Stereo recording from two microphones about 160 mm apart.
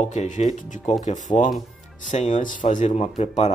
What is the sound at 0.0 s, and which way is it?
Speech, 50° left (ahead or behind).